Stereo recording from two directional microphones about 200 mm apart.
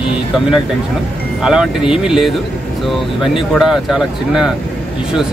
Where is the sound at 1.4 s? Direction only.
5° right (ahead or behind).